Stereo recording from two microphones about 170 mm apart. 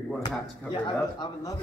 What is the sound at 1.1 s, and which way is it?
Speech, 25° left (ahead or behind).